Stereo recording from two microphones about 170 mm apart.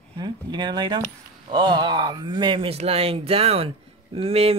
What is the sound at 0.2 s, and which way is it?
Speech, 25° right (ahead or behind).